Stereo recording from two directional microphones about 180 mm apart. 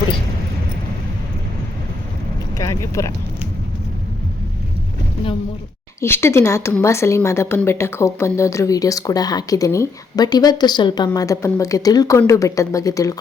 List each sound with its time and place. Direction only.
2.6 s speech: 15° left (ahead or behind)
6.0 s speech: 15° left (ahead or behind)